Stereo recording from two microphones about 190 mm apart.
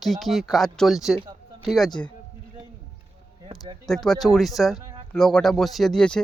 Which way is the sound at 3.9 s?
Centre (ahead or behind).